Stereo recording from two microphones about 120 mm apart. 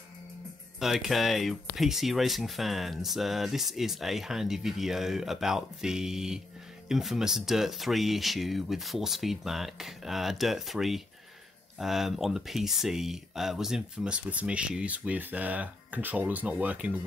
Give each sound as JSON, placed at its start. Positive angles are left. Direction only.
{"t": 0.7, "sound": "speech", "side_deg": 0}